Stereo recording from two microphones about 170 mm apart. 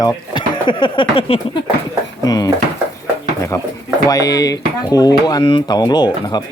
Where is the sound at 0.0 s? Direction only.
30° left (ahead or behind).